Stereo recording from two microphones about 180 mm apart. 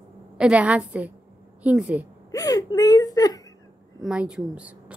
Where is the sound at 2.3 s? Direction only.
20° left (ahead or behind).